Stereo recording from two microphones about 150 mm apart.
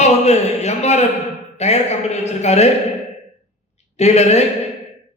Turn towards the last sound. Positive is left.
turn(degrees=45)  # may be behind; listen again after turning